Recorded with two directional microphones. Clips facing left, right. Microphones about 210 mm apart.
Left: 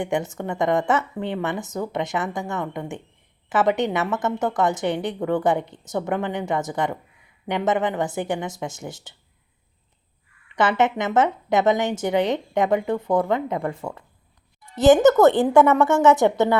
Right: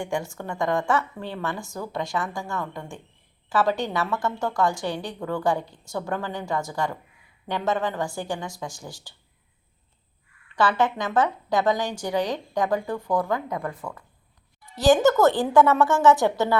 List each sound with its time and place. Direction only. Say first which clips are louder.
0.0 s a woman's voice: left 4 dB; 20° left (ahead or behind)
10.5 s a woman's voice: left 2 dB; 20° left (ahead or behind)